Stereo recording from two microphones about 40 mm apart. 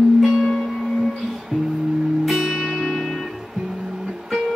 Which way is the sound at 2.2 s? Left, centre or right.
Centre.